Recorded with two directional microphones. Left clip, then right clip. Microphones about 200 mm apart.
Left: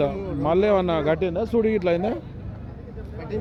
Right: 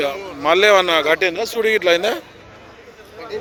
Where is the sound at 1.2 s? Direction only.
15° right (ahead or behind).